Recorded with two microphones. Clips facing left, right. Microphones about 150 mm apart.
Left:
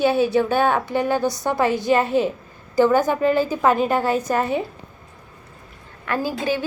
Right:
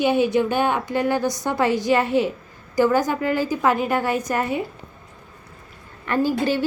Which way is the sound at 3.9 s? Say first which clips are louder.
Left 2 dB; 15° right (ahead or behind).